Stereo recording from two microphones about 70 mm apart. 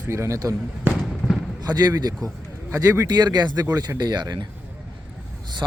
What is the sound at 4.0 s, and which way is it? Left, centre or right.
Speech, right.